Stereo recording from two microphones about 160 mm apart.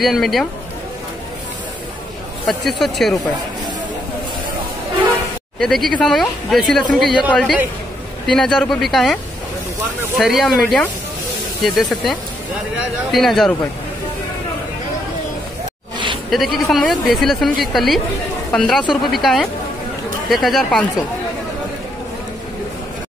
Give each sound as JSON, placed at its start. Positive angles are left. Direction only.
{"t": 0.0, "sound": "speech", "side_deg": 0}
{"t": 2.4, "sound": "speech", "side_deg": 0}
{"t": 5.6, "sound": "speech", "side_deg": 0}
{"t": 16.3, "sound": "speech", "side_deg": 0}